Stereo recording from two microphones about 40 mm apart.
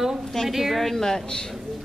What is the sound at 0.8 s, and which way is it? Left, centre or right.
Speech, centre.